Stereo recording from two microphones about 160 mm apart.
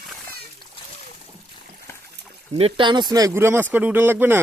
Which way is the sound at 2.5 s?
35° right (ahead or behind).